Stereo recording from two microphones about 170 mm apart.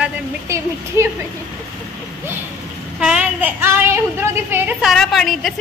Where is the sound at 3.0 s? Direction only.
5° right (ahead or behind).